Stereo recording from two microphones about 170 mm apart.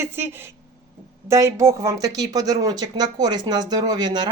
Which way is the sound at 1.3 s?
15° right (ahead or behind).